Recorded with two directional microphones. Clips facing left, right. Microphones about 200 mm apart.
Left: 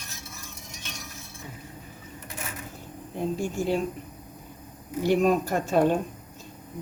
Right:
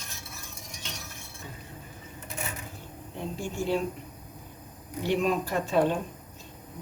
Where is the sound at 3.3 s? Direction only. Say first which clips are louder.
Even; 45° left (ahead or behind).